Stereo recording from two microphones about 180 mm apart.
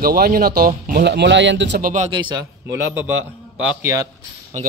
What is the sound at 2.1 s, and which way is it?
A man's voice, 25° right (ahead or behind).